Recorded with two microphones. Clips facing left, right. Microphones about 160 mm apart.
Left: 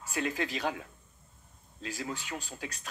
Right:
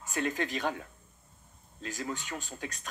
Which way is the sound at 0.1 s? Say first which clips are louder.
Right 1 dB; 45° right (ahead or behind).